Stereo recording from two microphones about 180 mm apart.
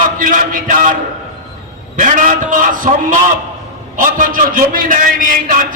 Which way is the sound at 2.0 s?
45° right (ahead or behind).